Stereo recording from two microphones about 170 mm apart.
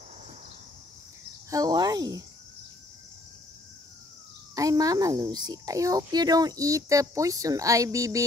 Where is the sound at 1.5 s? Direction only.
20° right (ahead or behind).